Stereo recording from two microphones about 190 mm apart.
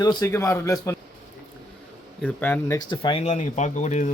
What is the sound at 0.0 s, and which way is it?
Speech, 20° left (ahead or behind).